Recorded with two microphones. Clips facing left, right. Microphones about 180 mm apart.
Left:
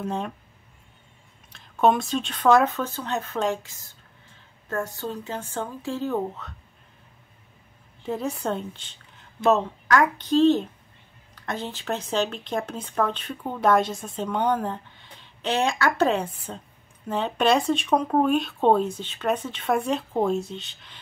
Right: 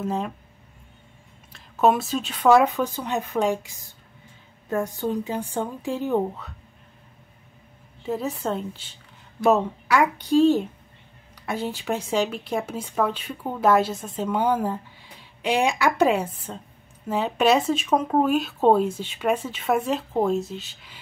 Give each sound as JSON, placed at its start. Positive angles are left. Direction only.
{"t": 0.0, "sound": "speech", "side_deg": 0}
{"t": 1.5, "sound": "speech", "side_deg": -5}
{"t": 8.0, "sound": "speech", "side_deg": -5}